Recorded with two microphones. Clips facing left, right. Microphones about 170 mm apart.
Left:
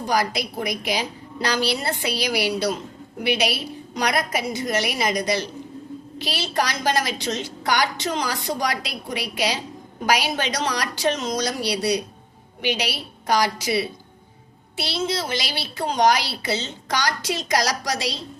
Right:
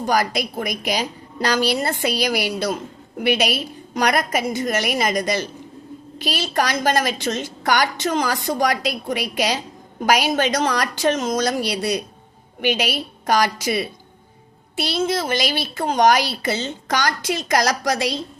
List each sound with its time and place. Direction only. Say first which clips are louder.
0.0 s a woman's voice: right 2 dB; 50° right (ahead or behind)